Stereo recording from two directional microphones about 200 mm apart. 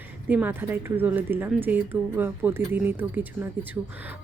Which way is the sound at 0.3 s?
10° right (ahead or behind).